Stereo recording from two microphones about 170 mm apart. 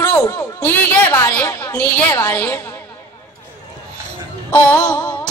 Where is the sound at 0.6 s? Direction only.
10° left (ahead or behind).